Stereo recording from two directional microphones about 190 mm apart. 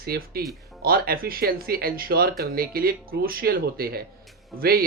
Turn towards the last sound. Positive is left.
turn(degrees=-50)  # may be behind; listen again after turning